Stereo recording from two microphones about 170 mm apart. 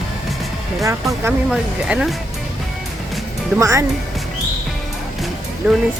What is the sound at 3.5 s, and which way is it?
Speech, 15° right (ahead or behind).